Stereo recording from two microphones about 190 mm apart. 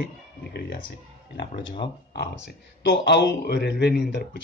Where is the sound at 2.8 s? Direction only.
65° left (ahead or behind).